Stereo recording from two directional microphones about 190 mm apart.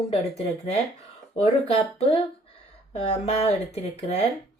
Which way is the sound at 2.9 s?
35° left (ahead or behind).